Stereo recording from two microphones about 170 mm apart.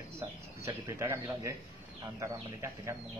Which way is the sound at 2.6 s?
15° right (ahead or behind).